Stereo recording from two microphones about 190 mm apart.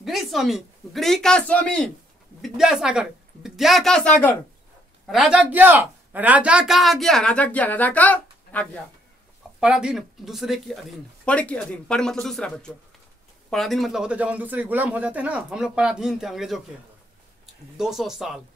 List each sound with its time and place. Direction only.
0.0 s a woman's voice: centre (ahead or behind)
9.6 s speech: 5° right (ahead or behind)
17.7 s speech: centre (ahead or behind)